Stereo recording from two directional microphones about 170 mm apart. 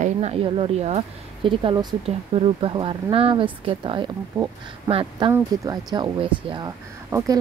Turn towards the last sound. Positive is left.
turn(degrees=-20)  # may be behind; listen again after turning